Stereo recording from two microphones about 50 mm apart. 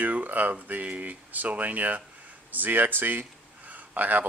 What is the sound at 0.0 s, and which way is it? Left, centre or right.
Speech, right.